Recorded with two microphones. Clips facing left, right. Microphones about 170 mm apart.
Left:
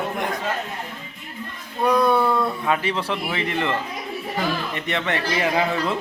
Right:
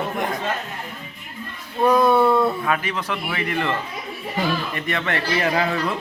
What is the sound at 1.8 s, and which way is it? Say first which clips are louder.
Speech: right 2 dB; 5° right (ahead or behind).